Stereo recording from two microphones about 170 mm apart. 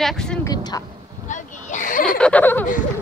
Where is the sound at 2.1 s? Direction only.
5° left (ahead or behind).